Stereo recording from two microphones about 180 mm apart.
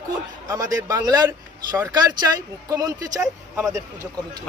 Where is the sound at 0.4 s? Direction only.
20° right (ahead or behind).